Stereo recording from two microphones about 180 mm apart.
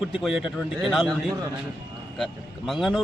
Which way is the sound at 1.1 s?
20° right (ahead or behind).